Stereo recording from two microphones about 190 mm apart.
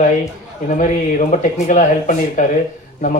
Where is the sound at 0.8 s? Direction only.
40° left (ahead or behind).